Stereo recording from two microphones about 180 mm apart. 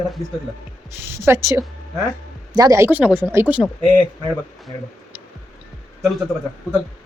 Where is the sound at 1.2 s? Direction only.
15° right (ahead or behind).